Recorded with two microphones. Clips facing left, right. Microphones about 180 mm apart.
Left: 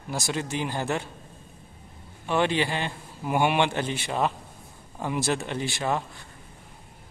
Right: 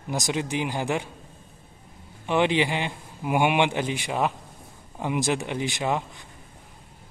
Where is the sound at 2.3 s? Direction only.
15° right (ahead or behind).